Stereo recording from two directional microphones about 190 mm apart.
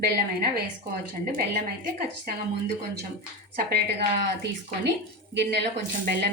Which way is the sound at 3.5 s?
60° right (ahead or behind).